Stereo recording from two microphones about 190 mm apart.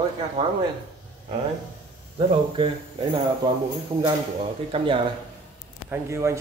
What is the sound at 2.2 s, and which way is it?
Speech, 30° right (ahead or behind).